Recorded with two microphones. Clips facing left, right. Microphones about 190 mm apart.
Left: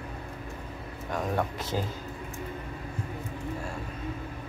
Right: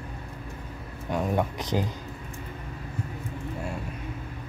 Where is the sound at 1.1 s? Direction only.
15° right (ahead or behind).